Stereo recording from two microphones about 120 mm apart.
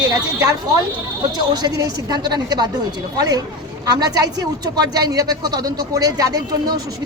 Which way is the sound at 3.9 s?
30° right (ahead or behind).